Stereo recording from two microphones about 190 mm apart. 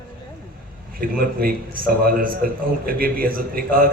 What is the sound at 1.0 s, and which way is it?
A man's voice, 50° right (ahead or behind).